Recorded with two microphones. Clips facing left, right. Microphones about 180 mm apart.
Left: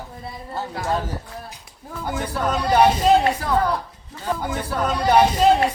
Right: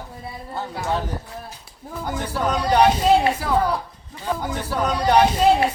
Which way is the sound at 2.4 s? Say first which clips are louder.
Even; 5° left (ahead or behind).